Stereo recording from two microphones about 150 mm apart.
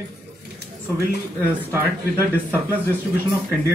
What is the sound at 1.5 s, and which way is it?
Speech, 15° right (ahead or behind).